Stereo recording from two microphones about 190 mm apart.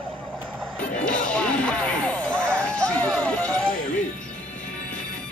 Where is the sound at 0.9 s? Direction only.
40° left (ahead or behind).